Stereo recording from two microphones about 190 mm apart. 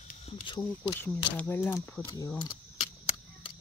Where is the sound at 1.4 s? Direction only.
10° left (ahead or behind).